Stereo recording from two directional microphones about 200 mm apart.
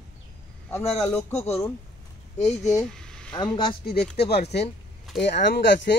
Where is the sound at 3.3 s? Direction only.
20° left (ahead or behind).